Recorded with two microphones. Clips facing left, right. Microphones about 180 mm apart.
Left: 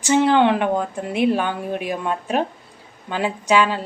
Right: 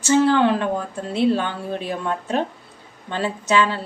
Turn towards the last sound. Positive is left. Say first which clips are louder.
# left 1 dB
turn(degrees=15)  # may be behind; listen again after turning